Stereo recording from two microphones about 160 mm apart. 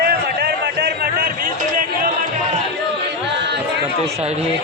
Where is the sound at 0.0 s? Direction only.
80° right.